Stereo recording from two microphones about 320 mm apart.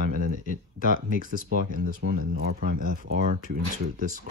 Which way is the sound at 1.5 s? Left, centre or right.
Right.